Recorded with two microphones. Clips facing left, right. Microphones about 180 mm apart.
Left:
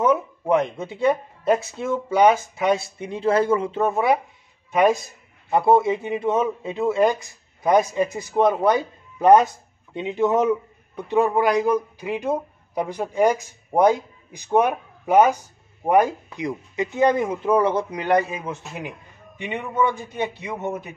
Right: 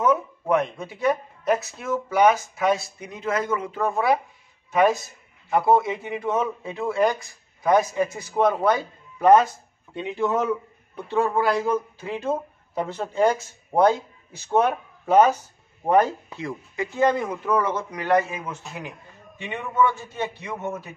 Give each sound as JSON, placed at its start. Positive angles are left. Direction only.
{"t": 0.0, "sound": "speech", "side_deg": 25}
{"t": 5.5, "sound": "a man's voice", "side_deg": 25}
{"t": 18.0, "sound": "a man's voice", "side_deg": 20}